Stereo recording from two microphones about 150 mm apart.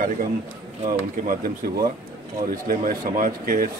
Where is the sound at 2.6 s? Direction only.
65° right (ahead or behind).